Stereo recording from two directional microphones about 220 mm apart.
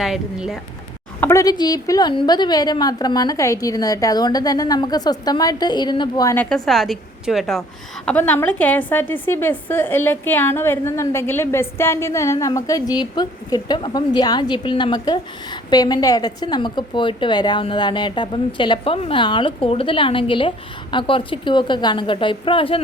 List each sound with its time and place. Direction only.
0.0 s speech: centre (ahead or behind)
1.2 s a woman's voice: 15° left (ahead or behind)